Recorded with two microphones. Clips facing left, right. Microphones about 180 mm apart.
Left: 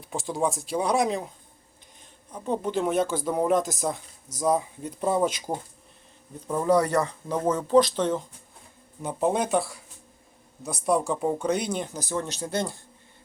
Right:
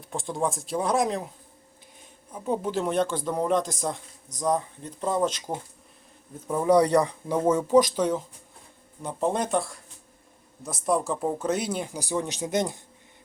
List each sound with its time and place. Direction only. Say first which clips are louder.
0.0 s speech: left 1 dB; centre (ahead or behind)
2.3 s speech: even; 5° right (ahead or behind)
6.5 s speech: right 2 dB; 10° right (ahead or behind)
9.0 s speech: left 2 dB; 5° left (ahead or behind); by 12.8 s 20° right (ahead or behind)